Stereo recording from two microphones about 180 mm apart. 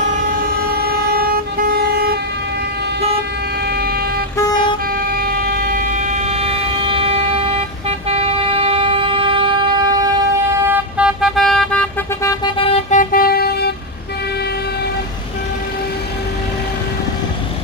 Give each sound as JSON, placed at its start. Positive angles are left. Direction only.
{"t": 0.7, "sound": "vehicle", "side_deg": -60}
{"t": 5.5, "sound": "train", "side_deg": -55}
{"t": 8.1, "sound": "vehicle", "side_deg": -35}
{"t": 10.7, "sound": "vehicle", "side_deg": -5}
{"t": 12.9, "sound": "vehicle", "side_deg": 55}